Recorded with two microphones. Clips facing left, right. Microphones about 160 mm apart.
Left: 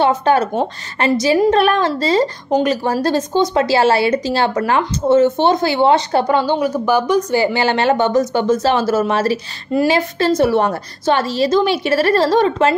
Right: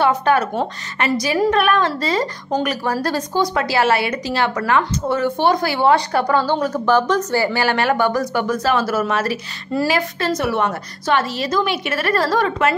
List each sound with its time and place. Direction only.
0.0 s a woman's voice: 25° left (ahead or behind)